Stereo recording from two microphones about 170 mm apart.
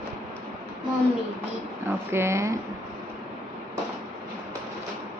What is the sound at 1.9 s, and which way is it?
Speech, 15° right (ahead or behind).